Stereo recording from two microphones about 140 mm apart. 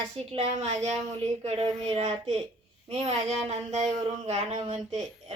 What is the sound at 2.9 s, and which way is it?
Female singing, 50° right (ahead or behind).